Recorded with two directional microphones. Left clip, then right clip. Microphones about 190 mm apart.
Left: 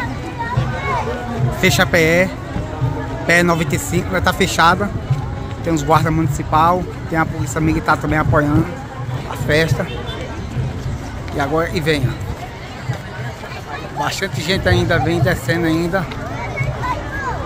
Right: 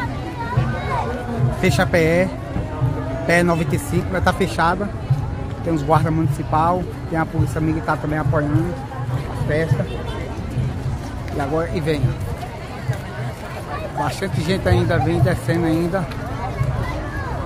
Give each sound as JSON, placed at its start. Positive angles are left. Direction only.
{"t": 1.6, "sound": "a man's voice", "side_deg": 5}
{"t": 9.5, "sound": "speech", "side_deg": 25}
{"t": 11.3, "sound": "a man's voice", "side_deg": 15}
{"t": 14.0, "sound": "a man's voice", "side_deg": 10}